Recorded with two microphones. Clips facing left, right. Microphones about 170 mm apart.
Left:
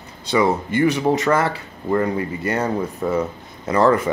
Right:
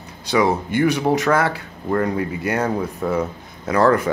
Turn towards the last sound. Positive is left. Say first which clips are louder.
# even
turn(degrees=0)  # may be behind; listen again after turning